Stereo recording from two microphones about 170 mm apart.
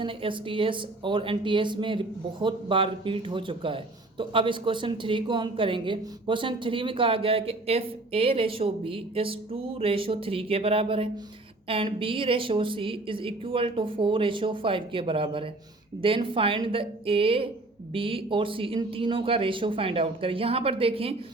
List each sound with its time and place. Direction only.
0.0 s speech: 30° right (ahead or behind)